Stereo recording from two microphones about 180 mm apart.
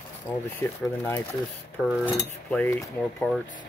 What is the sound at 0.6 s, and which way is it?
Speech, 10° left (ahead or behind).